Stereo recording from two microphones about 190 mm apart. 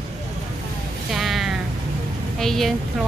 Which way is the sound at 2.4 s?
Centre (ahead or behind).